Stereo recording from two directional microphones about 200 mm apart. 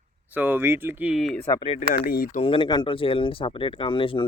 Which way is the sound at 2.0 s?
45° left (ahead or behind).